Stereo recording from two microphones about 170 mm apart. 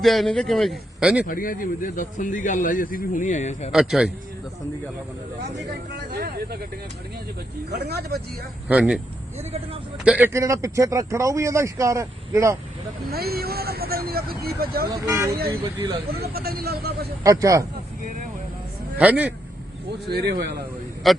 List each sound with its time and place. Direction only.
0.0 s a man's voice: centre (ahead or behind)
1.3 s speech: 55° left (ahead or behind)
3.7 s a man's voice: centre (ahead or behind)
6.1 s speech: 65° right (ahead or behind)
7.7 s speech: 70° right (ahead or behind)
8.6 s speech: 5° right (ahead or behind)
10.0 s speech: 10° right (ahead or behind)
13.1 s speech: 65° right (ahead or behind)
14.8 s speech: 20° right (ahead or behind)
15.4 s speech: 65° right (ahead or behind)
17.2 s speech: 20° right (ahead or behind)
18.9 s speech: 10° right (ahead or behind)
19.9 s speech: 75° right (ahead or behind)
21.0 s a man's voice: centre (ahead or behind)